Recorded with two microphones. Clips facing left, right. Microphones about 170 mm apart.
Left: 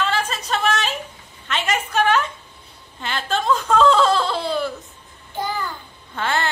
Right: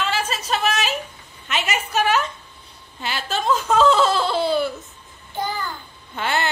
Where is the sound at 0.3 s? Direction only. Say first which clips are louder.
Left 1 dB; 5° right (ahead or behind).